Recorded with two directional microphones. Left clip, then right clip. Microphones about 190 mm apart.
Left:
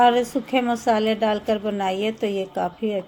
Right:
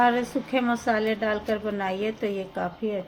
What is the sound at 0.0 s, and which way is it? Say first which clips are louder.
A woman's voice: left 5 dB; 30° left (ahead or behind).